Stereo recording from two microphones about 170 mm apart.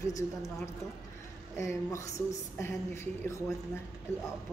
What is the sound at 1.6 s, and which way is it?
A woman's voice, 20° left (ahead or behind).